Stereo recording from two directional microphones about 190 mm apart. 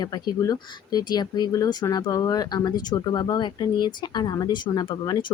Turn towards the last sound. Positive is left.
turn(degrees=25)  # may be behind; listen again after turning